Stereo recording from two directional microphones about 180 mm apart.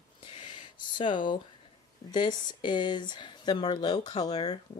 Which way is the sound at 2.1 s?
25° left (ahead or behind).